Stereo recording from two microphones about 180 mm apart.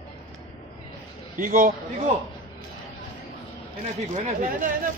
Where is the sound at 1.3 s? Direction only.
50° right (ahead or behind).